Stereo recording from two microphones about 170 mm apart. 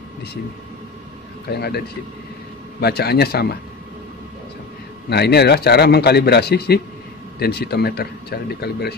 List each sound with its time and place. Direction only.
1.5 s a man's voice: 70° left (ahead or behind)
2.8 s a man's voice: 70° left (ahead or behind)
5.1 s a man's voice: 75° left (ahead or behind)